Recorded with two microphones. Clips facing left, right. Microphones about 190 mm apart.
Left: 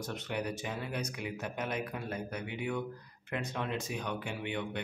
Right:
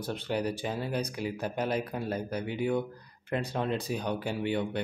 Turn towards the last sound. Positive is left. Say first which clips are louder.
# right 7 dB
turn(degrees=-35)  # may be behind; listen again after turning